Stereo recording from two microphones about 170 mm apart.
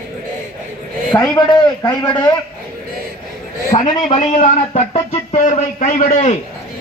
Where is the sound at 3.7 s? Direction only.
35° left (ahead or behind).